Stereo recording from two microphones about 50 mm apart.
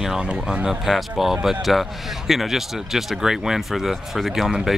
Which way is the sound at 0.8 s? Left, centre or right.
Centre.